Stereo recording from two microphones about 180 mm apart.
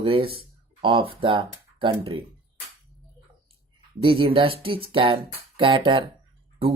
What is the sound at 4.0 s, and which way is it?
Speech, 30° right (ahead or behind).